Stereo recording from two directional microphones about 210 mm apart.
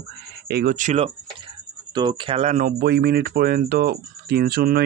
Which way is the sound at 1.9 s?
20° right (ahead or behind).